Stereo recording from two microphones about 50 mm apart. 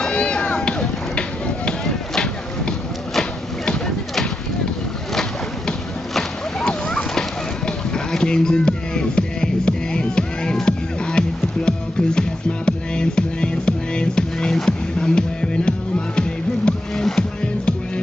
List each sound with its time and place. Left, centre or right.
0.1 s run: left
1.7 s a sound: centre
5.7 s splash: centre
7.2 s run: centre
14.5 s music: centre